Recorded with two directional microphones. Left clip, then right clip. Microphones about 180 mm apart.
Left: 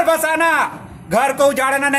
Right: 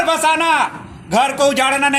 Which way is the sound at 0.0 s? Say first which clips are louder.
Even; 25° left (ahead or behind).